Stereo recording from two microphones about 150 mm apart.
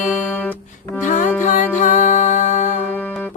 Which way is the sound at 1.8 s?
50° left (ahead or behind).